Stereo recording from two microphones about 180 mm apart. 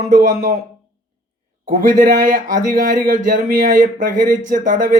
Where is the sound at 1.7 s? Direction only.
45° right (ahead or behind).